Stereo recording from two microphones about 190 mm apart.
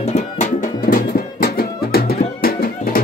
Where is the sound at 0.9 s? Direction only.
55° left (ahead or behind).